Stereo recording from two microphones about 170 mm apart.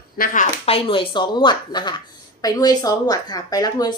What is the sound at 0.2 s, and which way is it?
Speech, 60° left (ahead or behind).